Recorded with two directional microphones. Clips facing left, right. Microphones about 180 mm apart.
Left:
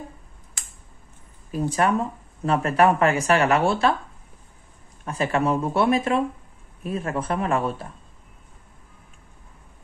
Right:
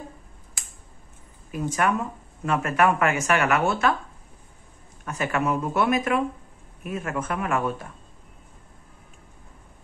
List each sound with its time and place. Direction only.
1.5 s speech: 35° left (ahead or behind)
5.0 s speech: 30° left (ahead or behind)